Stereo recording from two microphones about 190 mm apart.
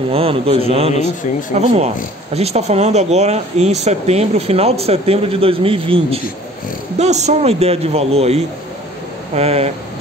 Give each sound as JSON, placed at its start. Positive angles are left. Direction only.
{"t": 0.1, "sound": "speech", "side_deg": -30}